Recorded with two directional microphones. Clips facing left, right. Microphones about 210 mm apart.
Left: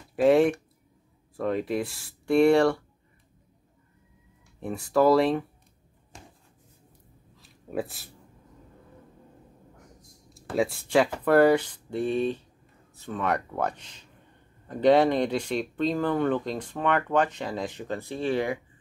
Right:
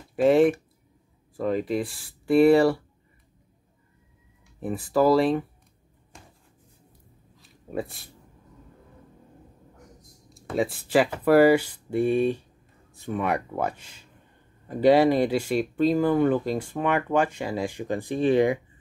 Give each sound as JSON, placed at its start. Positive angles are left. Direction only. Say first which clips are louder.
{"t": 0.1, "sound": "speech", "louder": "right 1 dB", "side_deg": 0}
{"t": 4.6, "sound": "speech", "louder": "right 1 dB", "side_deg": -5}
{"t": 7.4, "sound": "a sound", "louder": "even", "side_deg": 0}
{"t": 10.3, "sound": "speech", "louder": "even", "side_deg": 0}